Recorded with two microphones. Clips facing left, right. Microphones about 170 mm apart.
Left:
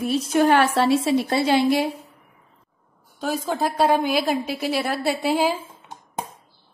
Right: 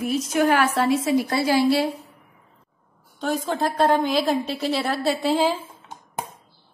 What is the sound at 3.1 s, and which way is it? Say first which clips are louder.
A woman's voice: even; 5° left (ahead or behind).